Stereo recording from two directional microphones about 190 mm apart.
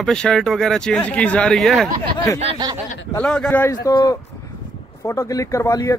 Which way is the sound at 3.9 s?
20° left (ahead or behind).